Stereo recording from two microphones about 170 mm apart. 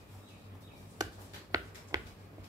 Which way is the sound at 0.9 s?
20° right (ahead or behind).